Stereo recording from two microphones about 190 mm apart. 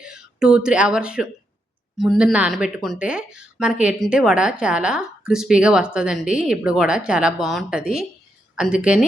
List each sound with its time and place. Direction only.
0.0 s speech: 5° right (ahead or behind)